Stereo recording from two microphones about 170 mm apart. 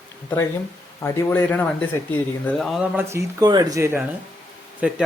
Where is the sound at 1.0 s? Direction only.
15° left (ahead or behind).